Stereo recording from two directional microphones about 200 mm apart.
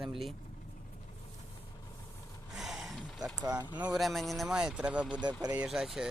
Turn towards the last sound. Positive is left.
turn(degrees=0)  # may be behind; listen again after turning